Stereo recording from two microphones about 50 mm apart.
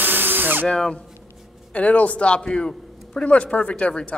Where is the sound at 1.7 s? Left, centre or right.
Left.